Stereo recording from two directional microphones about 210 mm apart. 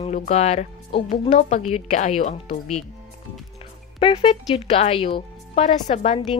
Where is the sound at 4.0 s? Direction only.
25° left (ahead or behind).